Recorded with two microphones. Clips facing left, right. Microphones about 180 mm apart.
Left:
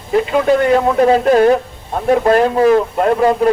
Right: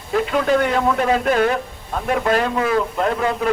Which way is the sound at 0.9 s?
35° left (ahead or behind).